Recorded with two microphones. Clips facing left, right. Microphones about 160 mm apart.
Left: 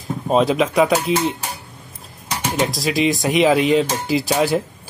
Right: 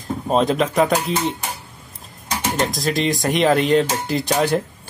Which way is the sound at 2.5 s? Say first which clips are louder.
Left 1 dB; centre (ahead or behind).